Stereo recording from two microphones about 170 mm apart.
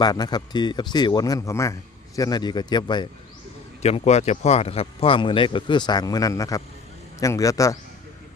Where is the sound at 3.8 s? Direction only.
40° left (ahead or behind).